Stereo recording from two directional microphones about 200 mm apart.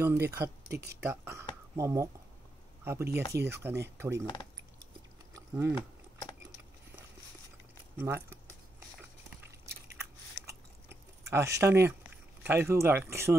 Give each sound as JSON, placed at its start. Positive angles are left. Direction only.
{"t": 0.0, "sound": "speech", "side_deg": -10}
{"t": 5.5, "sound": "speech", "side_deg": -10}
{"t": 8.0, "sound": "speech", "side_deg": -10}
{"t": 9.9, "sound": "chewing", "side_deg": -15}
{"t": 12.4, "sound": "speech", "side_deg": -10}